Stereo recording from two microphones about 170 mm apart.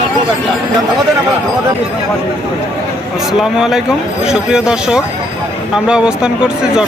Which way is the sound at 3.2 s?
5° right (ahead or behind).